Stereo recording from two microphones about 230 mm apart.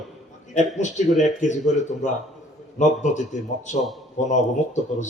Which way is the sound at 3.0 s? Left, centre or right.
Left.